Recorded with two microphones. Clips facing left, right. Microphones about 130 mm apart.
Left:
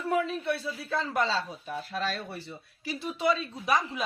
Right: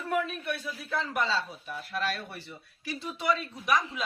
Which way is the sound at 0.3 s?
25° left (ahead or behind).